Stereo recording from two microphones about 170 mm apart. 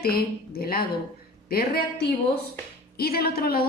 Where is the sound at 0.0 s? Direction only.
60° left (ahead or behind).